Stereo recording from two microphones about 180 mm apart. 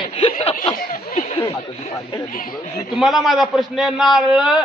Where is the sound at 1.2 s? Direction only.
35° left (ahead or behind).